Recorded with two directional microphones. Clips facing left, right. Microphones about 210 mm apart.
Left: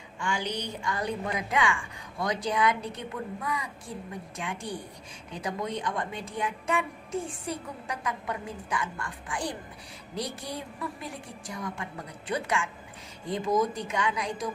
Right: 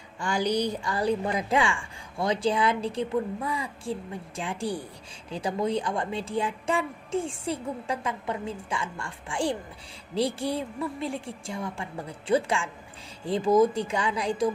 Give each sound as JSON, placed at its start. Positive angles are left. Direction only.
{"t": 0.2, "sound": "a woman's voice", "side_deg": -35}